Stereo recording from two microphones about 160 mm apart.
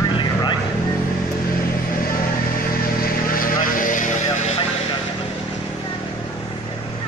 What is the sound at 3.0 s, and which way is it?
Vehicle, 65° left (ahead or behind).